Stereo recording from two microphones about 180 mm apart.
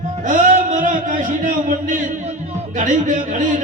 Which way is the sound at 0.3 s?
45° right (ahead or behind).